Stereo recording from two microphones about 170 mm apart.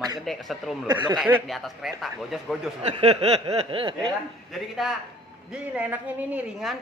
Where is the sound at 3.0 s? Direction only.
35° right (ahead or behind).